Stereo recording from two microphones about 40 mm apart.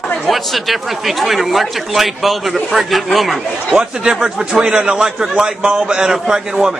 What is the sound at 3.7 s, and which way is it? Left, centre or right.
A man's voice, centre.